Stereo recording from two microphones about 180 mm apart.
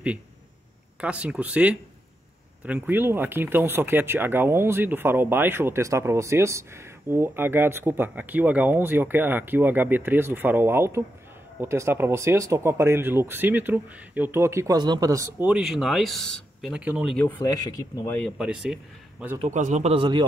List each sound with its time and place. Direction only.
1.0 s speech: 5° right (ahead or behind)
17.3 s speech: 15° left (ahead or behind)
18.4 s speech: 5° right (ahead or behind)
19.4 s a man's voice: 40° right (ahead or behind); by 20.2 s 25° right (ahead or behind)